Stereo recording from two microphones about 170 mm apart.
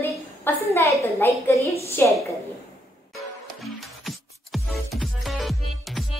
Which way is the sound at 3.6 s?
Centre (ahead or behind).